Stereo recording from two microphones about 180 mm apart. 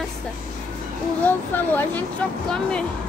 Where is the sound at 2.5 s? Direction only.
5° left (ahead or behind).